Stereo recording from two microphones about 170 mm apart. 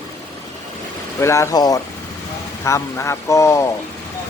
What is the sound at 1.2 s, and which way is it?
Speech, 15° left (ahead or behind).